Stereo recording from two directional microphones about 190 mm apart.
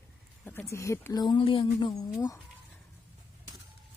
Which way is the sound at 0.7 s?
15° left (ahead or behind).